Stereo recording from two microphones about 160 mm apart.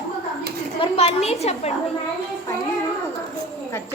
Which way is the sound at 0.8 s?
40° left (ahead or behind).